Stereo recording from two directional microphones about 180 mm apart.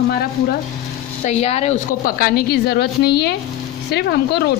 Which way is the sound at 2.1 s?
55° left (ahead or behind).